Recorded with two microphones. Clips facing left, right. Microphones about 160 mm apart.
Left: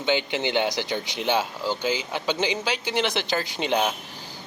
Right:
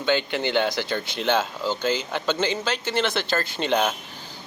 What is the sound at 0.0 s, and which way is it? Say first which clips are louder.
Speech: right 1 dB; 15° left (ahead or behind).